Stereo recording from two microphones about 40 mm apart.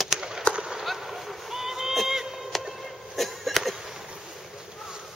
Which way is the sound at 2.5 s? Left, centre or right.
Centre.